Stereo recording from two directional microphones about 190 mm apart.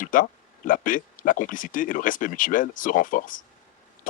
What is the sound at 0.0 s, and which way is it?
Speech, 45° left (ahead or behind).